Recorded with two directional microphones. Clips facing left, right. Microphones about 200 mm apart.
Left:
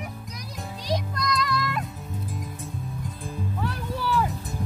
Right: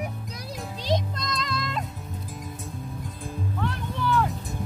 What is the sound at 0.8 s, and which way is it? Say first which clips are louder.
Music: right 1 dB; 25° right (ahead or behind).